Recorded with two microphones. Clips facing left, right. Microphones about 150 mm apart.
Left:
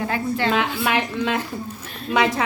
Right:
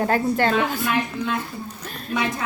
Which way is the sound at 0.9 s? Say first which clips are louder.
Left 2 dB; 90° left.